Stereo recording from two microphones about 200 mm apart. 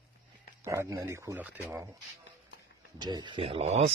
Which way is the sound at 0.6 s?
15° right (ahead or behind).